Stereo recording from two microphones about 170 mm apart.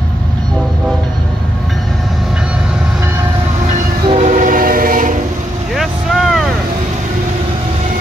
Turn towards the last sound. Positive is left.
turn(degrees=0)  # may be behind; listen again after turning